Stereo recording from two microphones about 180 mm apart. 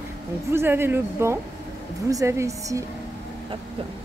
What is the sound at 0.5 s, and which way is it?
Speech, 15° right (ahead or behind).